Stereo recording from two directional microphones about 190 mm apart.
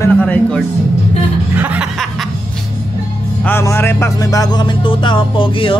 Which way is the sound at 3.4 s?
10° left (ahead or behind).